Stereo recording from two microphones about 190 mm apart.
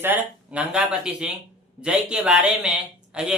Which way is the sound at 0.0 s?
10° right (ahead or behind).